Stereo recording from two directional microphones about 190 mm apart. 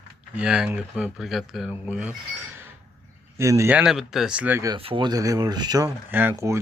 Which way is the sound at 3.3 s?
15° right (ahead or behind).